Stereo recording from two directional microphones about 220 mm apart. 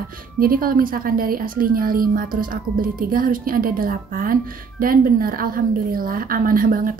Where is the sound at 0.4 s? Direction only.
40° right (ahead or behind).